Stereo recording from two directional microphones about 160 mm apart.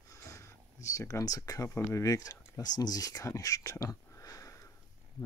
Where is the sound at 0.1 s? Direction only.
20° left (ahead or behind).